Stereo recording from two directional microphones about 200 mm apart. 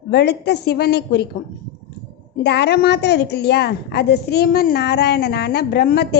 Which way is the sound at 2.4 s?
55° left (ahead or behind).